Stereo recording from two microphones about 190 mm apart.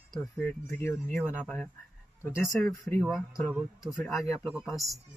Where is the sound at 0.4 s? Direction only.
10° left (ahead or behind).